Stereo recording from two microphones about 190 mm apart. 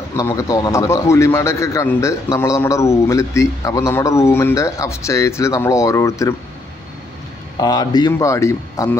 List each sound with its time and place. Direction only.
0.2 s a man's voice: 15° left (ahead or behind)
7.6 s a man's voice: 20° left (ahead or behind)